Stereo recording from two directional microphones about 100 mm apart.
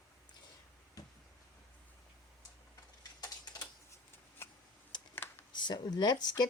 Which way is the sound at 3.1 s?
40° left (ahead or behind).